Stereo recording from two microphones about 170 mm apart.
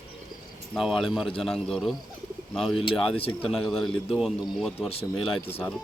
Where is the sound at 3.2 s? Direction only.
35° left (ahead or behind).